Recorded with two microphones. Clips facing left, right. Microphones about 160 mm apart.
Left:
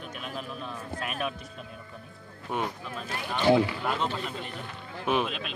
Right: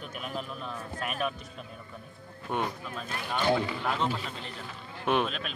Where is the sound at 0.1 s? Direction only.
Centre (ahead or behind).